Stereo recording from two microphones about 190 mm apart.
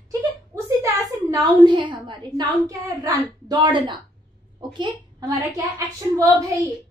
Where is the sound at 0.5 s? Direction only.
15° right (ahead or behind).